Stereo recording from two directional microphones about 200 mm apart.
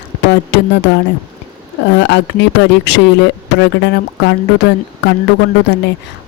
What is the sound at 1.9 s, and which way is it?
Speech, 60° left (ahead or behind).